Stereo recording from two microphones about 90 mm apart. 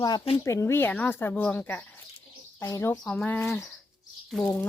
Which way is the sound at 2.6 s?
30° left (ahead or behind).